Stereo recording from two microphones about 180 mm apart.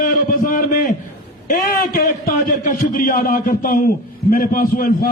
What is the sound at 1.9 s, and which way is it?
A man's voice, 50° left (ahead or behind).